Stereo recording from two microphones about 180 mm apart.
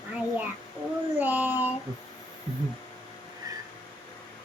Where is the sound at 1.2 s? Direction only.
10° right (ahead or behind).